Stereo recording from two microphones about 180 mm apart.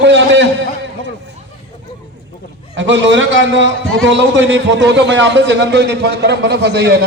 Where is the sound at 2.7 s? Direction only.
90° right.